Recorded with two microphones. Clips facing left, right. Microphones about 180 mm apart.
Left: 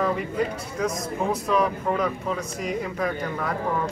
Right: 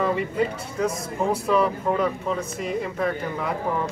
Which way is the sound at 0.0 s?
5° right (ahead or behind).